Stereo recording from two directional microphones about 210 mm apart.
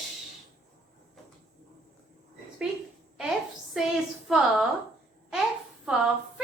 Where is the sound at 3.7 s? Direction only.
5° right (ahead or behind).